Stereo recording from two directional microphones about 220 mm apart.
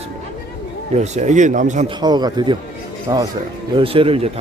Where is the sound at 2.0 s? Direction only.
20° right (ahead or behind).